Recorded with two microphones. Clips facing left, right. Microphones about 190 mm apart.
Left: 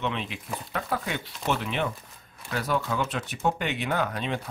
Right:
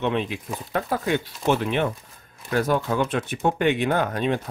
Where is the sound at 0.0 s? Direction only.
50° right (ahead or behind).